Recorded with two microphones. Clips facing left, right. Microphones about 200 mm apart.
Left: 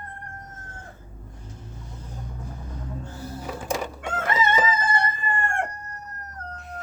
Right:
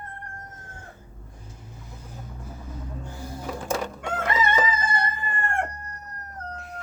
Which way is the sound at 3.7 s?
15° left (ahead or behind).